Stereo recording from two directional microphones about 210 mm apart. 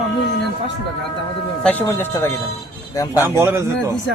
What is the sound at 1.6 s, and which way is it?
Speech, 10° left (ahead or behind).